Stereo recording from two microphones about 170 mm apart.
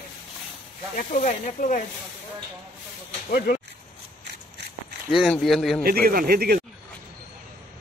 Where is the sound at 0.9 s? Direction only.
50° left (ahead or behind).